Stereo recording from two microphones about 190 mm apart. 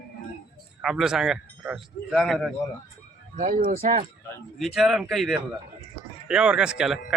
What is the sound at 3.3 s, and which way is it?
Speech, 40° right (ahead or behind).